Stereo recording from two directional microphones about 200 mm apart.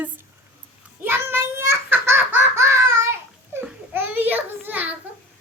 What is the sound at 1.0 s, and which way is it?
Belly laugh, 10° right (ahead or behind).